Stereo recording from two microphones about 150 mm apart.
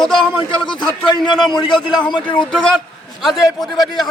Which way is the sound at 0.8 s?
30° left (ahead or behind).